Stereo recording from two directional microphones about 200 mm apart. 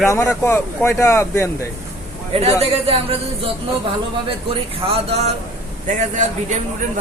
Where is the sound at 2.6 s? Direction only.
30° right (ahead or behind).